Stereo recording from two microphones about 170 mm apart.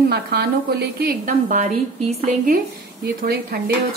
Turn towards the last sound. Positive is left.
turn(degrees=-70)  # may be behind; listen again after turning